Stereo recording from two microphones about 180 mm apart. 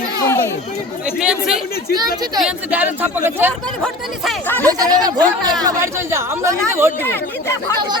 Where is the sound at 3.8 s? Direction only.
10° left (ahead or behind).